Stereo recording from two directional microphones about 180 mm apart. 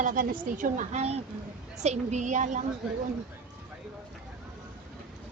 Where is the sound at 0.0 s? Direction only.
50° right (ahead or behind).